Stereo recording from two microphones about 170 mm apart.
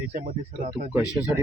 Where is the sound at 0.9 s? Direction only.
10° right (ahead or behind).